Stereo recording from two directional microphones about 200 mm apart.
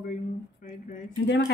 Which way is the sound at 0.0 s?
40° left (ahead or behind).